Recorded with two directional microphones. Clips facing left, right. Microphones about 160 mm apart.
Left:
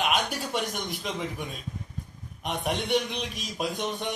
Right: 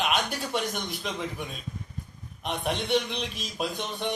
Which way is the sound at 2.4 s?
10° left (ahead or behind).